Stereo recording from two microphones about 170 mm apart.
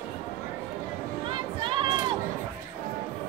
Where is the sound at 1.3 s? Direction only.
30° right (ahead or behind).